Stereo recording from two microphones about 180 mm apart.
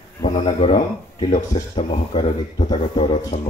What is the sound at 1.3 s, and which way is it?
Speech, 40° left (ahead or behind).